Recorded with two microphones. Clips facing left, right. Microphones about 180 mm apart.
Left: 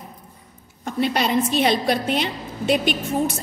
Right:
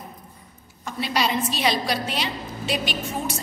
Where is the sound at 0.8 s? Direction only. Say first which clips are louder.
Left 4 dB; 55° left (ahead or behind).